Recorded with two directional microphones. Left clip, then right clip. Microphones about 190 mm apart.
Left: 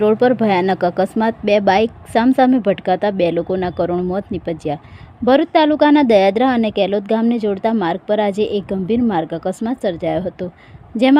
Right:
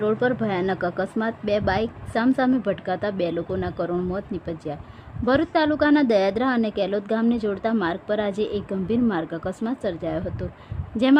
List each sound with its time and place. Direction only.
0.0 s a woman's voice: 25° left (ahead or behind)